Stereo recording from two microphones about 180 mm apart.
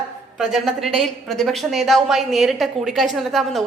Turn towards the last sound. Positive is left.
turn(degrees=0)  # may be behind; listen again after turning